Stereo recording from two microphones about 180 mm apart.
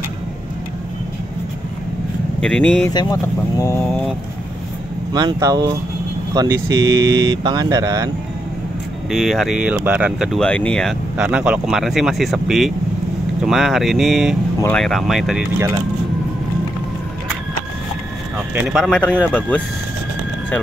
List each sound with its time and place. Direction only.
2.4 s speech: 5° left (ahead or behind)
2.9 s speech: 20° left (ahead or behind)
5.1 s speech: 20° right (ahead or behind)
9.1 s speech: centre (ahead or behind)
18.5 s speech: 10° right (ahead or behind)
18.8 s speech: 5° left (ahead or behind)